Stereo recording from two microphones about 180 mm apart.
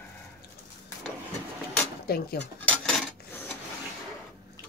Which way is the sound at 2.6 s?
5° left (ahead or behind).